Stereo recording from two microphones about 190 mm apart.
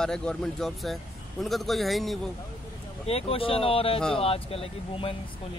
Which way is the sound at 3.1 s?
30° left (ahead or behind).